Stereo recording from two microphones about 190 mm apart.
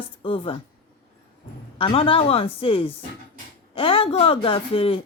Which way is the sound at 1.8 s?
30° left (ahead or behind).